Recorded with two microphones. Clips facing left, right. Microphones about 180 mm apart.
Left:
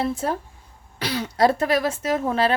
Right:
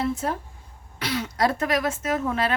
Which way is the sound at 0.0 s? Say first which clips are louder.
Left 2 dB; 30° left (ahead or behind).